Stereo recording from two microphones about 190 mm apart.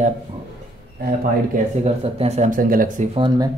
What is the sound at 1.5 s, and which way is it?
Speech, 35° right (ahead or behind).